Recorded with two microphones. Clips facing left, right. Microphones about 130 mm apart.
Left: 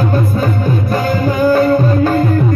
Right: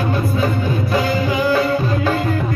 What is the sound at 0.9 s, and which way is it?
Music, 45° left (ahead or behind).